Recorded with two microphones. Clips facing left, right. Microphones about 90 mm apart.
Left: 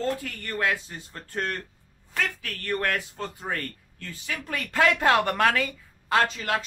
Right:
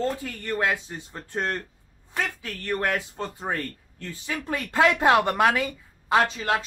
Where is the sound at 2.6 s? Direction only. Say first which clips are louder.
Right 1 dB; 10° right (ahead or behind).